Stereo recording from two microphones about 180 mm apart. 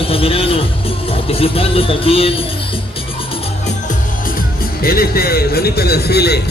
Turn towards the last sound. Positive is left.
turn(degrees=65)  # may be behind; listen again after turning